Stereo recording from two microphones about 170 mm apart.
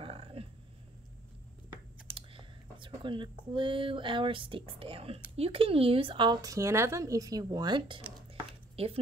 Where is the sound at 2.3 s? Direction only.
30° right (ahead or behind).